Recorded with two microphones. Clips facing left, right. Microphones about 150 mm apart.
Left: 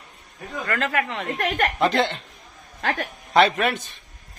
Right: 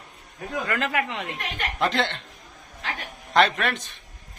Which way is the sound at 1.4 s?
55° left (ahead or behind).